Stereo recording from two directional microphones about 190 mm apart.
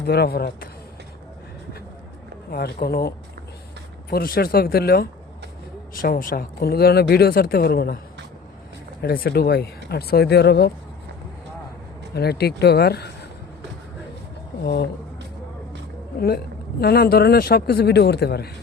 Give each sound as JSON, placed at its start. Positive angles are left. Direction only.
{"t": 0.0, "sound": "speech", "side_deg": 55}
{"t": 2.5, "sound": "speech", "side_deg": 55}
{"t": 4.1, "sound": "speech", "side_deg": 50}
{"t": 12.1, "sound": "speech", "side_deg": 55}
{"t": 14.6, "sound": "speech", "side_deg": 55}
{"t": 16.8, "sound": "speech", "side_deg": 55}